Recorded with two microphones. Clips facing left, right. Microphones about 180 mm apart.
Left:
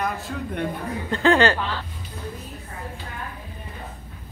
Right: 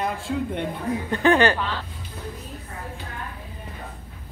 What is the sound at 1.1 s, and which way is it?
Speech, 15° right (ahead or behind).